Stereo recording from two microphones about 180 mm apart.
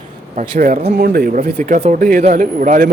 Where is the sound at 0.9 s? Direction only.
55° right (ahead or behind).